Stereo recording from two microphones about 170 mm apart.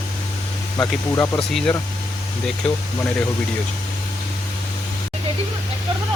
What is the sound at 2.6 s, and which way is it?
Speech, 5° left (ahead or behind).